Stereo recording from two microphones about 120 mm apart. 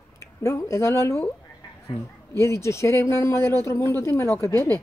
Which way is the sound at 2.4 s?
25° left (ahead or behind).